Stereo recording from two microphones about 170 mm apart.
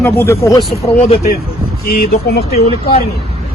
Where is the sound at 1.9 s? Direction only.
65° left (ahead or behind).